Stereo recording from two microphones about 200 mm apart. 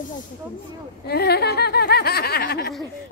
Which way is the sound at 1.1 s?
55° left (ahead or behind).